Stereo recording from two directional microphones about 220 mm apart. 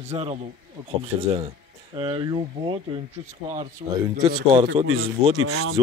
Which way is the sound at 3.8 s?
20° right (ahead or behind).